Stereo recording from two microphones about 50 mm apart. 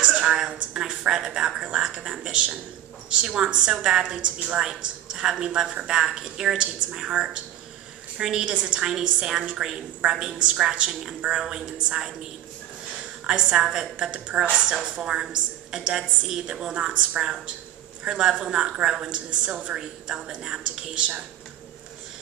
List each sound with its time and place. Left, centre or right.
0.0 s a woman's voice: centre
13.3 s a woman's voice: centre
16.7 s a woman's voice: right